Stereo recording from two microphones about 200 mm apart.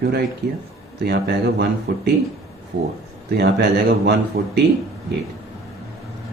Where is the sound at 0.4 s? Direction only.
60° right (ahead or behind).